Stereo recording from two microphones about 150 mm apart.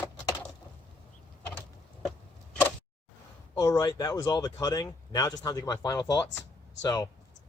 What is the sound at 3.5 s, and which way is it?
Speech, 25° left (ahead or behind).